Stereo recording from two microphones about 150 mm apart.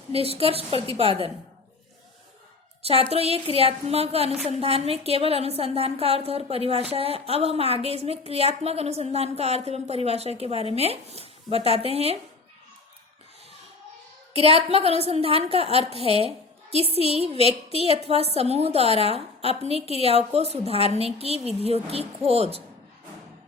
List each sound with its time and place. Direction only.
0.1 s a woman's voice: 40° right (ahead or behind)
2.8 s a woman's voice: 40° right (ahead or behind)
14.3 s a woman's voice: 40° right (ahead or behind)